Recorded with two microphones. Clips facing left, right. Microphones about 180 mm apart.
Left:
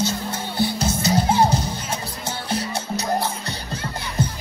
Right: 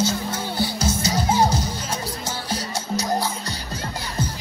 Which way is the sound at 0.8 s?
60° left (ahead or behind).